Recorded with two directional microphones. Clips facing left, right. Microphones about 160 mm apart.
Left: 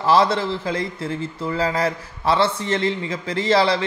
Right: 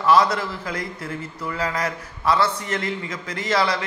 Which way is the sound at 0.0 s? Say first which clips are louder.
Left 1 dB; 30° left (ahead or behind).